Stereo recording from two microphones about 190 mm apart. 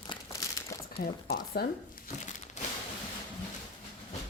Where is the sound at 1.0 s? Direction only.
30° left (ahead or behind).